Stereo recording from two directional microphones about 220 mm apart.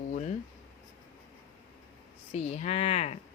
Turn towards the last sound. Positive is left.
turn(degrees=30)  # may be behind; listen again after turning